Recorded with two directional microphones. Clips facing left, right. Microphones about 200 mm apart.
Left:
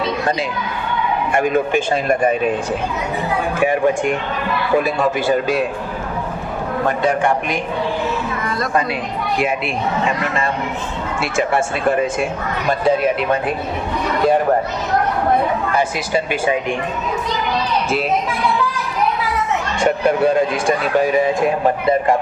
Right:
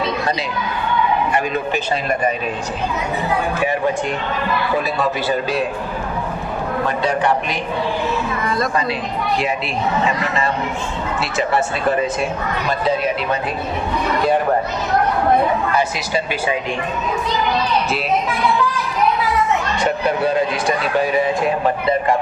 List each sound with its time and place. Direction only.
1.3 s speech: 50° left (ahead or behind)
3.6 s speech: 50° left (ahead or behind)
6.8 s speech: 50° left (ahead or behind)
10.1 s speech: 50° left (ahead or behind)
19.8 s speech: 50° left (ahead or behind)